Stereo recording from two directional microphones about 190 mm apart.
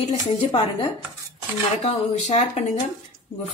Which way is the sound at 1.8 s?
35° left (ahead or behind).